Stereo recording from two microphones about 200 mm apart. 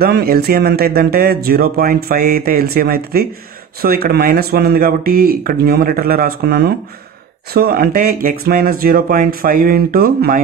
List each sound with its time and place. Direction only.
0.0 s speech: 50° right (ahead or behind)